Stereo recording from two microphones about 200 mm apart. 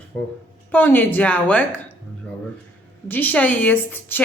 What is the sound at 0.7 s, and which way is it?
A woman's voice, 10° left (ahead or behind).